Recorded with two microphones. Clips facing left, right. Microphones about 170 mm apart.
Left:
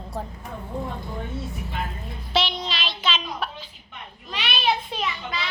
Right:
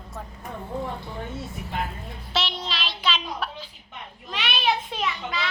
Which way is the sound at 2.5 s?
Centre (ahead or behind).